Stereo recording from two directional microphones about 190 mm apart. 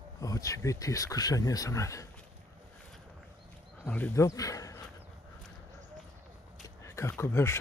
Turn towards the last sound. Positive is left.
turn(degrees=15)  # may be behind; listen again after turning